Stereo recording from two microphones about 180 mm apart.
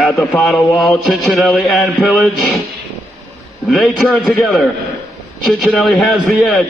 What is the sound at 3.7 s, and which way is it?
A man's voice, 5° left (ahead or behind).